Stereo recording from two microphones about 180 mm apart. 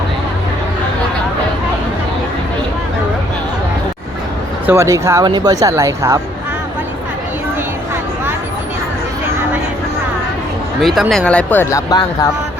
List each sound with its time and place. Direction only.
4.6 s speech: 15° right (ahead or behind)
10.8 s speech: centre (ahead or behind); by 12.3 s 20° left (ahead or behind)